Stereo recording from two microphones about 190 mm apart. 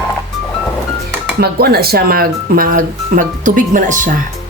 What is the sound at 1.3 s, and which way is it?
Speech, 55° right (ahead or behind).